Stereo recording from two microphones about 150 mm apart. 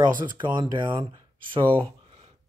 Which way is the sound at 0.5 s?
30° right (ahead or behind).